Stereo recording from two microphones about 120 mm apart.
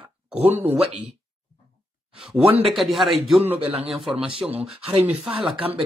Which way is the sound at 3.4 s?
55° right (ahead or behind).